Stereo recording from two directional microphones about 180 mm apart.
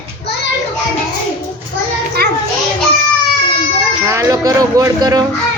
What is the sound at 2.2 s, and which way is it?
Children playing, 60° right (ahead or behind).